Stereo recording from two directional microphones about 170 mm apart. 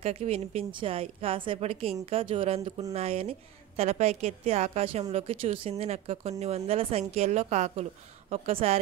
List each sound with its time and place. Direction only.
0.0 s a woman's voice: 35° right (ahead or behind)